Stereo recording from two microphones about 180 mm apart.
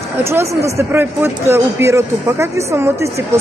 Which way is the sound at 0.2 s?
15° right (ahead or behind).